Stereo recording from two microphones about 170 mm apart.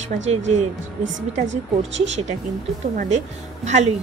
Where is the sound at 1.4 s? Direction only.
90° right.